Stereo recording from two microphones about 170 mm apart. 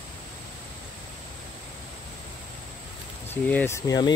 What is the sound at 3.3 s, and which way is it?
Speech, 10° left (ahead or behind).